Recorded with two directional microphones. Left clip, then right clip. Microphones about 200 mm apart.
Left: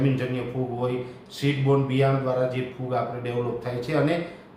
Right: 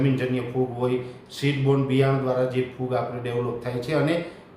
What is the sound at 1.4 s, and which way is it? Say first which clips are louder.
A man's voice: even; 15° right (ahead or behind).